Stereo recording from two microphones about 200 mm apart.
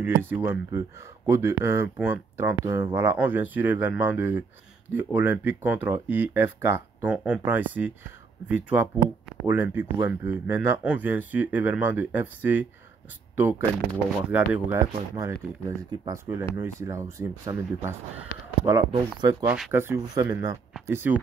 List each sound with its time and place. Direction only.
0.0 s speech: 10° right (ahead or behind)
14.3 s speech: 10° right (ahead or behind)
19.4 s speech: 5° right (ahead or behind)